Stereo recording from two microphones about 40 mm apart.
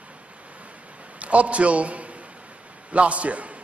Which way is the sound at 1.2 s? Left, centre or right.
Right.